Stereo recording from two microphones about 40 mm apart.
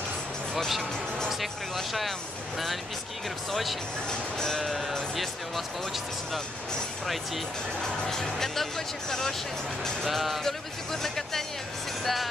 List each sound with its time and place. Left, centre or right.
1.4 s speech: centre
4.1 s speech: centre
4.6 s speech: centre
7.8 s speech: centre
10.0 s speech: centre
10.4 s speech: centre